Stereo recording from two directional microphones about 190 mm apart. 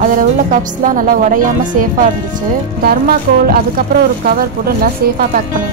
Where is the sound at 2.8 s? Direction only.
50° right (ahead or behind).